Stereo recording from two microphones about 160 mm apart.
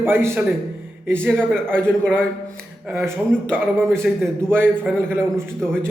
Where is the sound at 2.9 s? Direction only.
15° right (ahead or behind).